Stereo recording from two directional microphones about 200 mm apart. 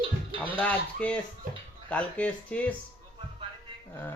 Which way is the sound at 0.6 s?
5° left (ahead or behind).